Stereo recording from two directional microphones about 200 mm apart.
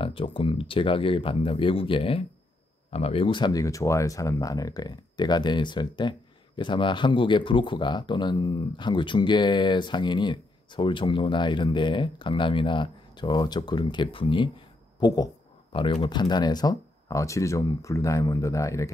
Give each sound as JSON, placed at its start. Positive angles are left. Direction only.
{"t": 0.0, "sound": "speech", "side_deg": 25}